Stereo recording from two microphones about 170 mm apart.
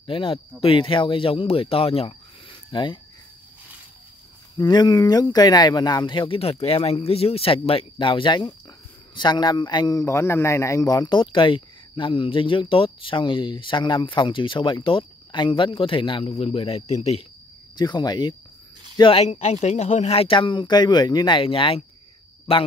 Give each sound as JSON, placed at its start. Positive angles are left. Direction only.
{"t": 0.0, "sound": "a man's voice", "side_deg": 30}
{"t": 4.6, "sound": "a man's voice", "side_deg": 25}
{"t": 17.7, "sound": "a man's voice", "side_deg": 25}